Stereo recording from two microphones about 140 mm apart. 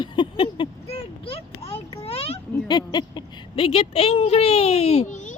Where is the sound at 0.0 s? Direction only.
35° left (ahead or behind).